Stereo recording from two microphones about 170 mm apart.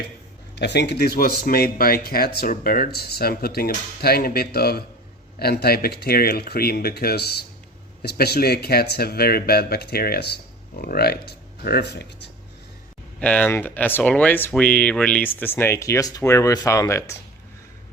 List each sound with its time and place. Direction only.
0.5 s speech: 80° left
13.1 s speech: 5° left (ahead or behind)